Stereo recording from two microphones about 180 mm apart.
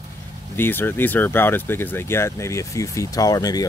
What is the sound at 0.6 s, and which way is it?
Speech, 10° left (ahead or behind).